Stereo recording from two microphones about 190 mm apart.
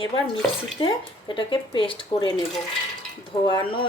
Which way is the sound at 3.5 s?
25° left (ahead or behind).